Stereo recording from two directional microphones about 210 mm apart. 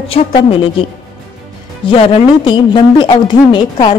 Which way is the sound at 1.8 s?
25° left (ahead or behind).